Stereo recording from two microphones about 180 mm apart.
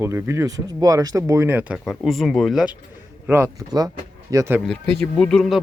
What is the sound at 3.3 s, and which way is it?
Speech, 15° right (ahead or behind).